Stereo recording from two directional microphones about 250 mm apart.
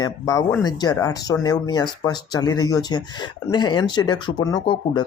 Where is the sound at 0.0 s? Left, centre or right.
Centre.